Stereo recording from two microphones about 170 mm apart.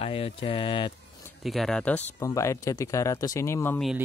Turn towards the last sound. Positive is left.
turn(degrees=15)  # may be behind; listen again after turning